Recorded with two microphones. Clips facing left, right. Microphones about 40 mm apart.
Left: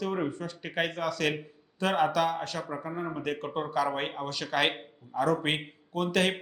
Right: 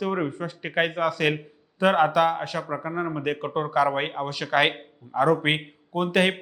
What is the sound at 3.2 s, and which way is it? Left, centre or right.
A man's voice, centre.